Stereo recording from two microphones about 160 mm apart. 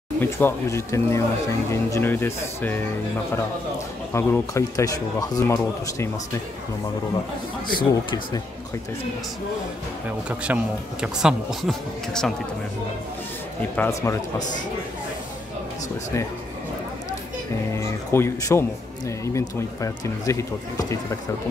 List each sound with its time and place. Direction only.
0.2 s speech: 15° left (ahead or behind)
4.1 s speech: 15° left (ahead or behind)
7.6 s speech: 30° left (ahead or behind)
10.0 s speech: 10° right (ahead or behind)
13.7 s speech: 15° left (ahead or behind)
17.7 s speech: 15° left (ahead or behind)